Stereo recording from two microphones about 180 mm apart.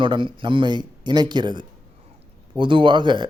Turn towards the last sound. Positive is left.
turn(degrees=-25)  # may be behind; listen again after turning